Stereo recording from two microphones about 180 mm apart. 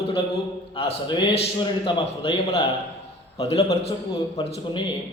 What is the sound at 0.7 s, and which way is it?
A man's voice, 30° left (ahead or behind).